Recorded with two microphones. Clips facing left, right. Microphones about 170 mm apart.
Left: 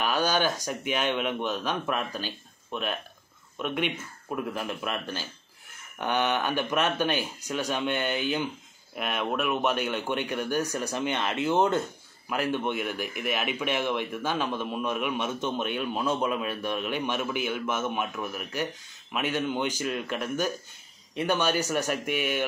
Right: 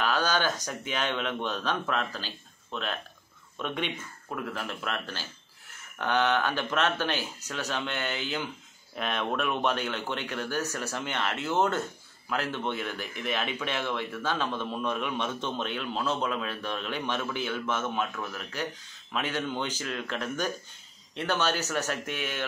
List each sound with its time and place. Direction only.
0.0 s speech: 15° left (ahead or behind)